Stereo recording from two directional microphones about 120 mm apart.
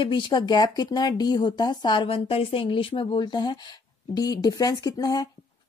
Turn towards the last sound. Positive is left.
turn(degrees=30)  # may be behind; listen again after turning